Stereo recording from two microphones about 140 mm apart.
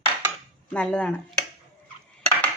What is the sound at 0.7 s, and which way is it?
Speech, 10° left (ahead or behind).